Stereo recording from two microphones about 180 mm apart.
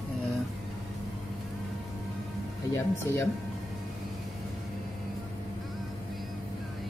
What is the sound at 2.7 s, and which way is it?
Speech, 15° left (ahead or behind).